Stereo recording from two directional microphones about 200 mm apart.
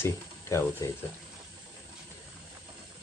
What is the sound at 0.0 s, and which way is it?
Speech, 15° left (ahead or behind).